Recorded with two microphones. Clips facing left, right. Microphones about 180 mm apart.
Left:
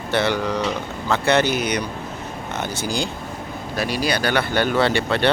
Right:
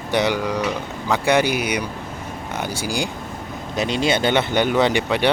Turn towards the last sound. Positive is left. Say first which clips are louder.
# right 1 dB
turn(degrees=-15)  # may be behind; listen again after turning